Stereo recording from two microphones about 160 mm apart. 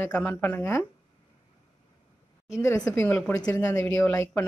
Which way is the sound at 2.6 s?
20° left (ahead or behind).